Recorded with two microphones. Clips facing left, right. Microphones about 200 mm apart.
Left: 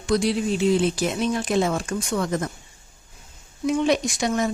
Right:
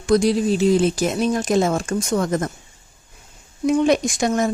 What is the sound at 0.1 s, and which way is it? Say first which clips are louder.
Speech: right 5 dB; 45° right (ahead or behind).